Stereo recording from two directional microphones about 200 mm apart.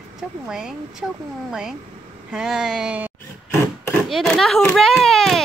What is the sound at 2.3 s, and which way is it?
Speech, 5° right (ahead or behind).